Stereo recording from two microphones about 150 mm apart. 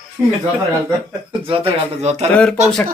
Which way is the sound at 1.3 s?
35° right (ahead or behind).